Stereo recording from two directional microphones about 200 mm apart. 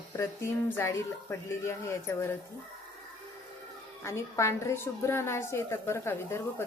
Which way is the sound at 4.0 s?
15° left (ahead or behind).